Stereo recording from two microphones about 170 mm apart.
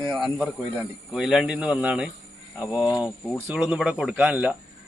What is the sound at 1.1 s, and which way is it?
Speech, centre (ahead or behind).